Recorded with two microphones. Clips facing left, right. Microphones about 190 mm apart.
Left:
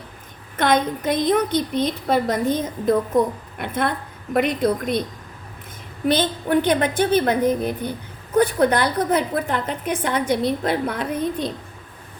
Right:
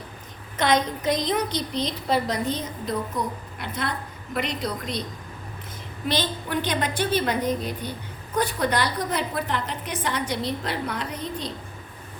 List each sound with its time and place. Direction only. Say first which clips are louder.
0.5 s a woman's voice: left 3 dB; 55° left (ahead or behind)
6.1 s a woman's voice: left 7 dB; 50° left (ahead or behind)